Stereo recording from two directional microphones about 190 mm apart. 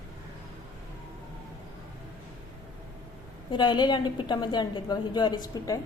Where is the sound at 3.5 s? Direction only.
25° left (ahead or behind).